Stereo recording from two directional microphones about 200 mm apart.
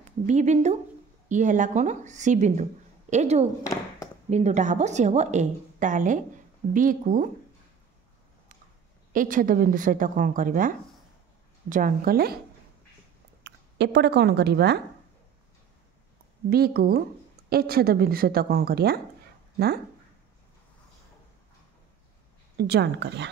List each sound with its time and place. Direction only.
0.3 s a woman's voice: 35° right (ahead or behind)
9.1 s a woman's voice: 40° right (ahead or behind)
11.7 s a woman's voice: 45° right (ahead or behind)
13.4 s speech: 60° right (ahead or behind)
16.4 s a woman's voice: 50° right (ahead or behind)
22.6 s a woman's voice: 60° right (ahead or behind)